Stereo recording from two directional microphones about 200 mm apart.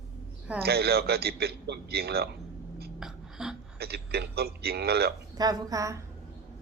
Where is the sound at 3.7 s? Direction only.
55° right (ahead or behind).